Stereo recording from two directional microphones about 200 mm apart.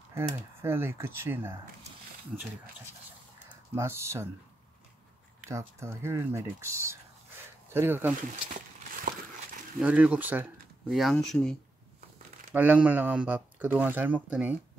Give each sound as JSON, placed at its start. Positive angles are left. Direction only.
{"t": 0.1, "sound": "speech", "side_deg": -10}
{"t": 3.7, "sound": "speech", "side_deg": -15}
{"t": 5.5, "sound": "speech", "side_deg": -15}
{"t": 9.1, "sound": "crumpling", "side_deg": -50}
{"t": 9.8, "sound": "speech", "side_deg": -5}
{"t": 12.5, "sound": "speech", "side_deg": -5}